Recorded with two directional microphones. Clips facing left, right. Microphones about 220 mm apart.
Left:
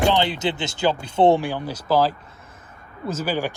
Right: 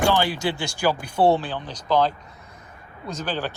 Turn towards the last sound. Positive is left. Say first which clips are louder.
# left 4 dB
turn(degrees=10)  # may be behind; listen again after turning